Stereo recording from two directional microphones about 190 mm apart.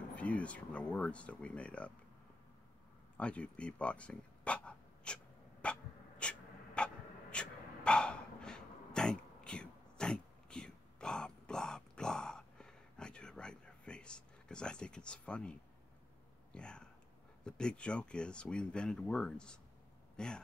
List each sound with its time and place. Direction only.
0.1 s speech: 5° left (ahead or behind)
3.2 s a sound: 5° left (ahead or behind)
16.5 s speech: 5° left (ahead or behind)